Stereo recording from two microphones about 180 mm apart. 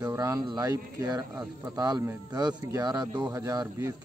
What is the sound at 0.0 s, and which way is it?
Speech, 20° right (ahead or behind).